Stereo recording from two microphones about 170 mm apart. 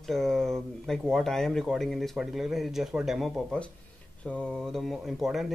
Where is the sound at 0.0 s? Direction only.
Centre (ahead or behind).